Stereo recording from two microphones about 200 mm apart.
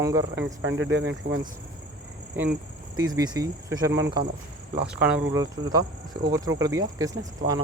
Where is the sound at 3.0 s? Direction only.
20° right (ahead or behind).